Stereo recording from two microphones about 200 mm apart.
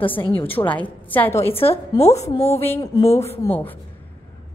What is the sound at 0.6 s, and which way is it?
Speech, 10° left (ahead or behind).